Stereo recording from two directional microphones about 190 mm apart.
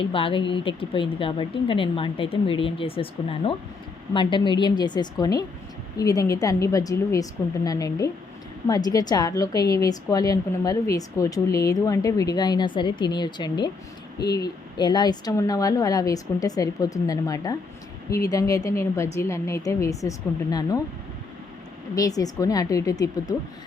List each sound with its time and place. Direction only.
0.0 s a woman's voice: 25° left (ahead or behind)
21.9 s a woman's voice: 20° left (ahead or behind)